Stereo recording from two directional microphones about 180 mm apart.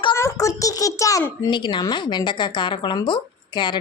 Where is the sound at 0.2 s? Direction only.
15° left (ahead or behind).